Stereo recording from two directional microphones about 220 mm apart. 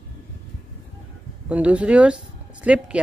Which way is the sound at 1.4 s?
5° right (ahead or behind).